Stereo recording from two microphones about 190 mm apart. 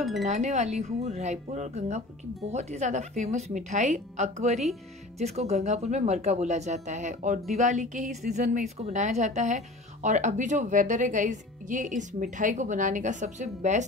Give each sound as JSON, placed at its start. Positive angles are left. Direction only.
{"t": 0.0, "sound": "speech", "side_deg": 0}
{"t": 0.3, "sound": "speech", "side_deg": -35}